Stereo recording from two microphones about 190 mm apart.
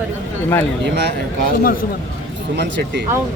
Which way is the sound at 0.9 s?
65° right (ahead or behind).